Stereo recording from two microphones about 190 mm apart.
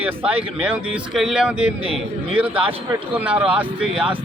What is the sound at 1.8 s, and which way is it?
Speech, 30° right (ahead or behind).